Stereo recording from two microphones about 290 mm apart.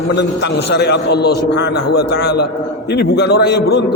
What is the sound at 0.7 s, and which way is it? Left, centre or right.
A man's voice, left.